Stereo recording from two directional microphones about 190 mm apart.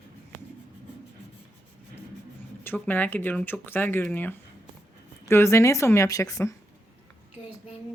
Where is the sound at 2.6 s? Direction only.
10° left (ahead or behind).